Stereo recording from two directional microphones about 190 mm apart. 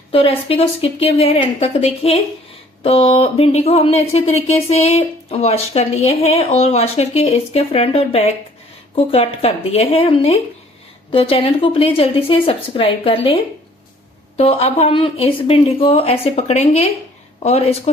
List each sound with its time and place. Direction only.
0.1 s speech: 30° left (ahead or behind)
14.3 s speech: 30° left (ahead or behind)